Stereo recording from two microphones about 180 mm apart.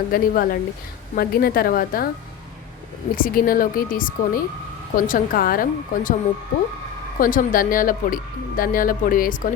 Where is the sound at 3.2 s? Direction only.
50° left (ahead or behind).